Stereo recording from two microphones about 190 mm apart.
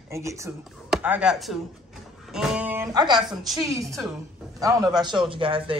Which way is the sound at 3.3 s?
Centre (ahead or behind).